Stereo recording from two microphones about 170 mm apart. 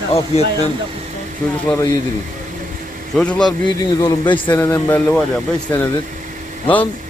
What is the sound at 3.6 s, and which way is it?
A man's voice, 25° left (ahead or behind).